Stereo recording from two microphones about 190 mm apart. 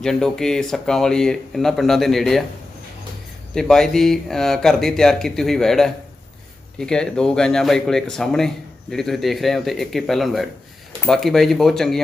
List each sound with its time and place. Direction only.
0.0 s speech: 5° left (ahead or behind)
3.5 s speech: 5° left (ahead or behind)